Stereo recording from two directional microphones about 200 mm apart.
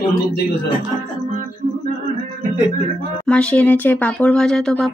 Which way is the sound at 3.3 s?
5° left (ahead or behind).